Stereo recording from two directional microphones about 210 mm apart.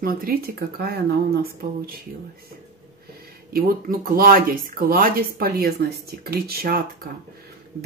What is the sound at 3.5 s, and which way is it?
Speech, 45° right (ahead or behind).